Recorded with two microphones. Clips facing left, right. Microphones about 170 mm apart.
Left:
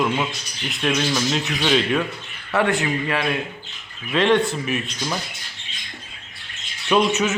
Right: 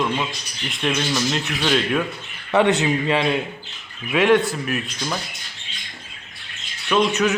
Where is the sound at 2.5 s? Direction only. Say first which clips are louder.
Right 3 dB; 20° right (ahead or behind).